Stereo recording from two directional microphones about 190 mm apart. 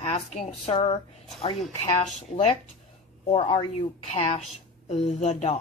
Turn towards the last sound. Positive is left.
turn(degrees=35)  # may be behind; listen again after turning